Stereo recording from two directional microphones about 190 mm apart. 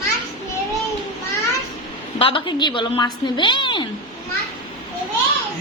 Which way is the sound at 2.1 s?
30° left (ahead or behind).